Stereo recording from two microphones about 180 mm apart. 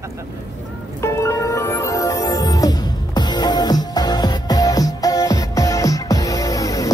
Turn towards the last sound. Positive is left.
turn(degrees=20)  # may be behind; listen again after turning